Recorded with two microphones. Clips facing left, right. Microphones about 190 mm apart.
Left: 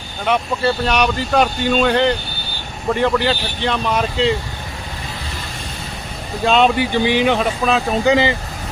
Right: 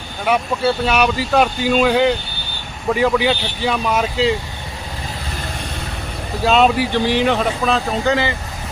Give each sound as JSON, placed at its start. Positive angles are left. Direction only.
{"t": 0.3, "sound": "speech", "side_deg": -5}
{"t": 6.4, "sound": "speech", "side_deg": 0}
{"t": 8.0, "sound": "speech", "side_deg": 15}